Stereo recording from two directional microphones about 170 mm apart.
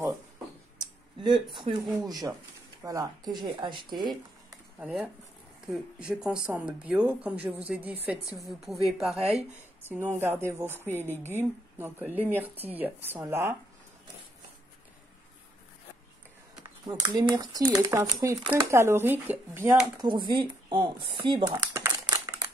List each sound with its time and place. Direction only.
1.2 s speech: 25° right (ahead or behind)
4.7 s a woman's voice: 10° right (ahead or behind)
9.2 s speech: 35° right (ahead or behind)
10.1 s speech: 15° right (ahead or behind)
16.8 s speech: 25° right (ahead or behind)
20.0 s speech: 25° right (ahead or behind)